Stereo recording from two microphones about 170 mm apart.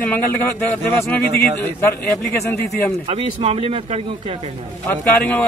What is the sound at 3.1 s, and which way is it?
Speech, 35° right (ahead or behind).